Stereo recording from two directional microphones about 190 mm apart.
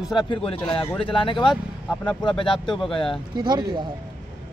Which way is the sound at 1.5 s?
Centre (ahead or behind).